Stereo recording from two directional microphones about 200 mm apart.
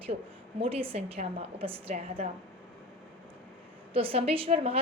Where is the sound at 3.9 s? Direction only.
30° right (ahead or behind).